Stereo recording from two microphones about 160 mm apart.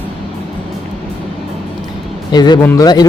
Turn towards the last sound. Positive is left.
turn(degrees=25)  # may be behind; listen again after turning